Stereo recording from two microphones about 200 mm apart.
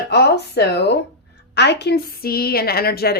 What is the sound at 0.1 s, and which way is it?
A woman's voice, 55° left (ahead or behind).